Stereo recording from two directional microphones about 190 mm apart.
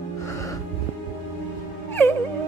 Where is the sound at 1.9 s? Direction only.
10° left (ahead or behind).